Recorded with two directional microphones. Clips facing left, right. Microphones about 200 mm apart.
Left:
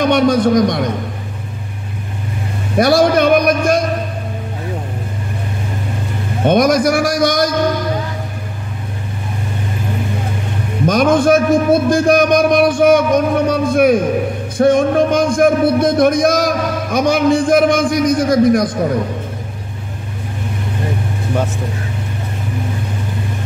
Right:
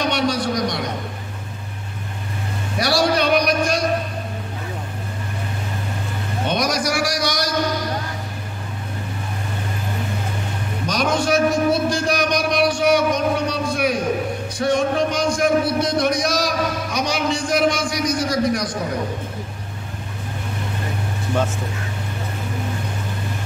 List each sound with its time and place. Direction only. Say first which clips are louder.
0.0 s speech: left 9 dB; 50° left (ahead or behind)
2.8 s a sound: left 8 dB; 50° left (ahead or behind)
6.4 s speech: left 10 dB; 50° left (ahead or behind)
10.9 s speech: left 8 dB; 50° left (ahead or behind)